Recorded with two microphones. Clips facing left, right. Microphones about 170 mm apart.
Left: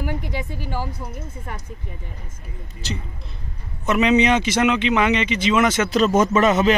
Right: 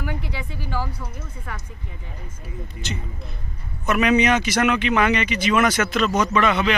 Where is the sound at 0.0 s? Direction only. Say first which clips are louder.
Left 3 dB; 45° left (ahead or behind).